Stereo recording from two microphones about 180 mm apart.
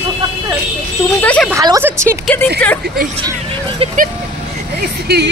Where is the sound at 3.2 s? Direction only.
30° right (ahead or behind).